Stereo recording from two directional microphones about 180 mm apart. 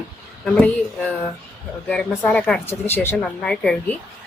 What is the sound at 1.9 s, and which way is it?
Speech, 5° left (ahead or behind).